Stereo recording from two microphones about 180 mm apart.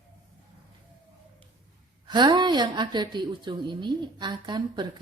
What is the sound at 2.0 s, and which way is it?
A woman's voice, 25° right (ahead or behind).